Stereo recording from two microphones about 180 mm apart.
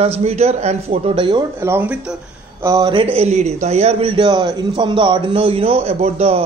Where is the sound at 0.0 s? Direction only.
35° right (ahead or behind).